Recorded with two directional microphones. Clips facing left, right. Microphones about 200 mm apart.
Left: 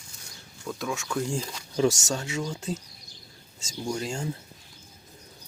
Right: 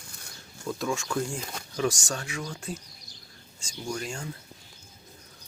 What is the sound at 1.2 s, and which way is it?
Speech, 25° left (ahead or behind).